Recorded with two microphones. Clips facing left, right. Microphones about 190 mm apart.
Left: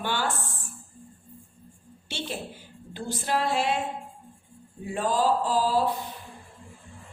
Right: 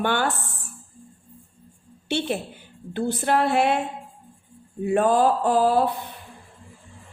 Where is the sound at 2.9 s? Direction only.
60° right (ahead or behind).